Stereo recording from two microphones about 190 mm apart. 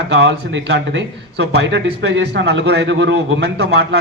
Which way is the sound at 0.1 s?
70° right (ahead or behind).